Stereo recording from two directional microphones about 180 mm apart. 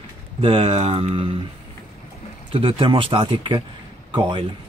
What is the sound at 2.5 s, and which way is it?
Speech, 30° right (ahead or behind).